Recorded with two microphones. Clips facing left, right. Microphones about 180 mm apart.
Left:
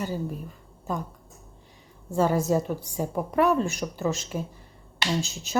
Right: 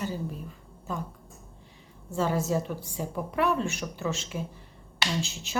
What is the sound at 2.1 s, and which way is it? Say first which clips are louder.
A woman's voice: left 4 dB; 45° left (ahead or behind).